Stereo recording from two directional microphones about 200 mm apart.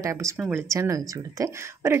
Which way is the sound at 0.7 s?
15° right (ahead or behind).